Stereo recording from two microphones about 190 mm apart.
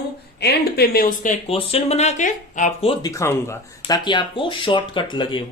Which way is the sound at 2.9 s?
20° left (ahead or behind).